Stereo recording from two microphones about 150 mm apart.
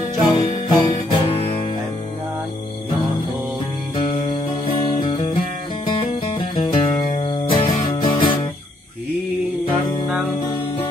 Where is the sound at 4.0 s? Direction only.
35° left (ahead or behind).